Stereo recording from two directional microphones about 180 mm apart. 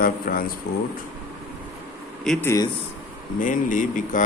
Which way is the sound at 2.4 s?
20° left (ahead or behind).